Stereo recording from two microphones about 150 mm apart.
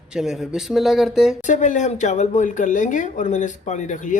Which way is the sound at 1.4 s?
55° left (ahead or behind).